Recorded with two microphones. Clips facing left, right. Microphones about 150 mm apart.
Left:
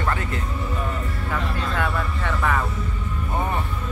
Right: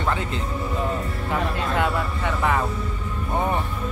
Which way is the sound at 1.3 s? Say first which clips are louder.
Right 3 dB; 20° right (ahead or behind).